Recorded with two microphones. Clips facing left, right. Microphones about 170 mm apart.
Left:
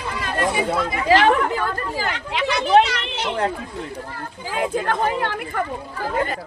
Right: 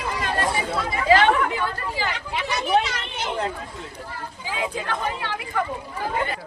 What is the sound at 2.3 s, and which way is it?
Chatter, 80° left.